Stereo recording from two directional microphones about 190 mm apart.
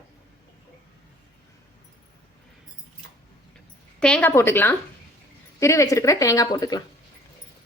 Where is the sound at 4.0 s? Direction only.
10° left (ahead or behind).